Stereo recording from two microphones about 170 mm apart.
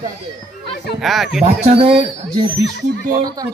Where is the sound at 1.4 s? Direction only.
35° right (ahead or behind).